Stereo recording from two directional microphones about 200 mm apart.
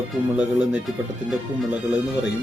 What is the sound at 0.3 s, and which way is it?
Speech, 5° right (ahead or behind).